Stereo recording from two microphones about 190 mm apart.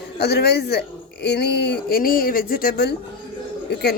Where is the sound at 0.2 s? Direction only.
60° left (ahead or behind).